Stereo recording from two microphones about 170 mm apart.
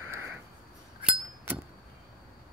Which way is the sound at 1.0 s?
10° right (ahead or behind).